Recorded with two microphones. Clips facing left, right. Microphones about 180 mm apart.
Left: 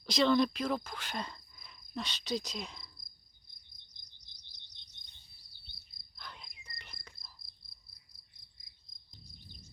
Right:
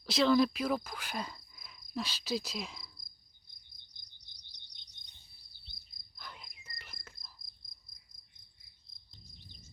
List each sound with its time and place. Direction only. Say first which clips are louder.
0.0 s speech: right 1 dB; 5° right (ahead or behind)
6.1 s cricket: even; 5° right (ahead or behind)
7.6 s cricket: even; 30° left (ahead or behind)